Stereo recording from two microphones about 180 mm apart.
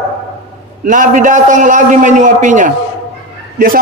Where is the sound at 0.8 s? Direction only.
45° right (ahead or behind).